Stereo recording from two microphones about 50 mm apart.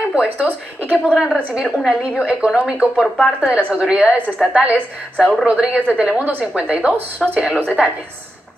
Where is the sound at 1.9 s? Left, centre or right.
Right.